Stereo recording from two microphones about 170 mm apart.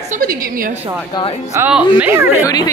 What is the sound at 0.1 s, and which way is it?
Speech, 55° right (ahead or behind).